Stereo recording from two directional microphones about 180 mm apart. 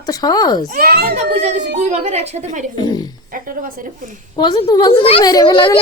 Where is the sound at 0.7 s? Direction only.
60° right (ahead or behind).